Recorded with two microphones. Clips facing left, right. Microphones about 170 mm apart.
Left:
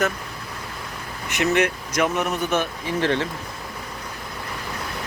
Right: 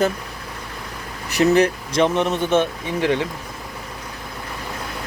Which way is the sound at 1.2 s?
35° right (ahead or behind).